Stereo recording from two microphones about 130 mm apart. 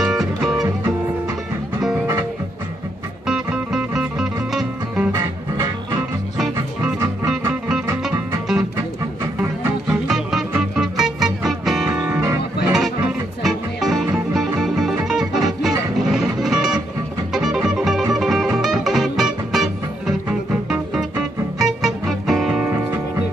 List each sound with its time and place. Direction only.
0.0 s music: 5° right (ahead or behind)
3.3 s music: 5° right (ahead or behind)
5.1 s music: 25° right (ahead or behind)
7.6 s music: 5° right (ahead or behind)
8.5 s music: 20° right (ahead or behind)
9.8 s music: 5° right (ahead or behind)
12.1 s music: 25° right (ahead or behind)
13.4 s music: centre (ahead or behind)
21.6 s music: centre (ahead or behind)
22.7 s music: 15° right (ahead or behind)